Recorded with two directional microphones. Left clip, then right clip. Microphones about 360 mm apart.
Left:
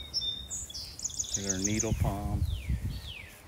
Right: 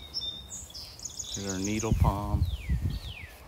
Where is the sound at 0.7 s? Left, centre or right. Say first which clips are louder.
Left 3 dB; centre.